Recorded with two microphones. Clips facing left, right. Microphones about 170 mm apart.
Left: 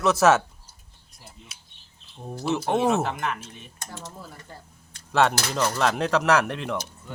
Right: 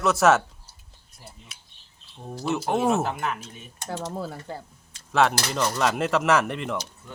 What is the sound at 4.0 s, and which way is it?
Speech, 80° right.